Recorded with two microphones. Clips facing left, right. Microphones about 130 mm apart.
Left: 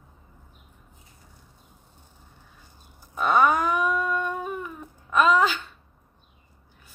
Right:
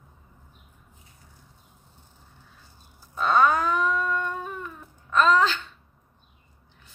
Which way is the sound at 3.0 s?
15° left (ahead or behind).